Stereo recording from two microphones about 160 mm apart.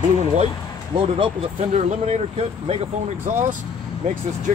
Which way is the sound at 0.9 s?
35° right (ahead or behind).